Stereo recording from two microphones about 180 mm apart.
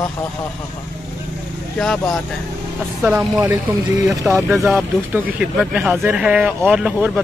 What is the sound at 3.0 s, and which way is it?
Speech, 5° right (ahead or behind).